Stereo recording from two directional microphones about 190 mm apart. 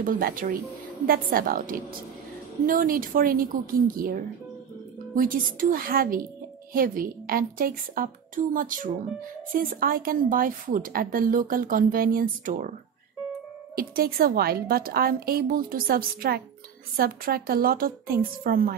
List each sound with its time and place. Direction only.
0.0 s a woman's voice: 45° right (ahead or behind)
13.7 s a woman's voice: 50° right (ahead or behind)